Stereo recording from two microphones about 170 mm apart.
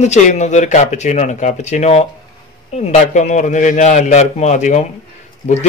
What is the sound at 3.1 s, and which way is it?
A man's voice, 45° left (ahead or behind).